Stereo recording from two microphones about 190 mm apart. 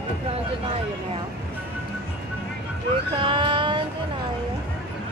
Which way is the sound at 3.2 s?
25° right (ahead or behind).